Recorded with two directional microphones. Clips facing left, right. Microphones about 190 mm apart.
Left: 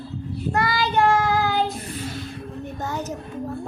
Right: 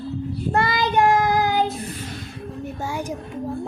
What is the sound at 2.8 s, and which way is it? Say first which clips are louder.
Child singing: right 1 dB; 10° right (ahead or behind).